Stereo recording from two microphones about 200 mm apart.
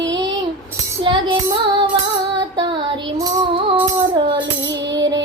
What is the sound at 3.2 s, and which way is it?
Music, 20° right (ahead or behind).